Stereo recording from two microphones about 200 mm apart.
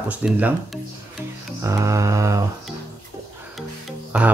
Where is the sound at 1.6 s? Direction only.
15° right (ahead or behind).